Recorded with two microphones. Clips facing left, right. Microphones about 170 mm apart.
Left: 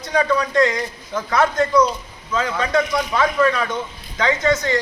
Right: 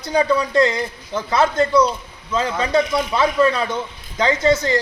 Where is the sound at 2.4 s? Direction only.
30° right (ahead or behind).